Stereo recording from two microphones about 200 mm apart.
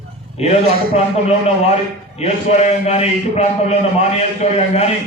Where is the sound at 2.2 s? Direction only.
30° left (ahead or behind).